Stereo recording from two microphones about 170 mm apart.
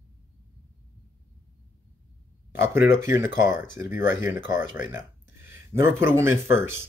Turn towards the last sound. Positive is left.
turn(degrees=-15)  # may be behind; listen again after turning